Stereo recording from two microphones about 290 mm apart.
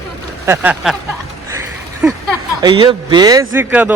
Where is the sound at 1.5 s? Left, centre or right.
Centre.